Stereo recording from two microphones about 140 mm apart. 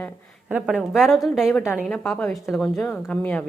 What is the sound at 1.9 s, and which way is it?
A woman's voice, 5° left (ahead or behind).